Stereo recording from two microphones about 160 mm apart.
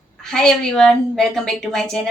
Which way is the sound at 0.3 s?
5° left (ahead or behind).